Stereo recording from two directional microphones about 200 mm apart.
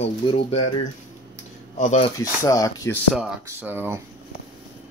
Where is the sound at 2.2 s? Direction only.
15° left (ahead or behind).